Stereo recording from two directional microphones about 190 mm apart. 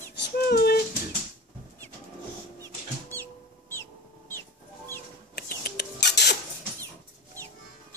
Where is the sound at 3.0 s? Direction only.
10° left (ahead or behind).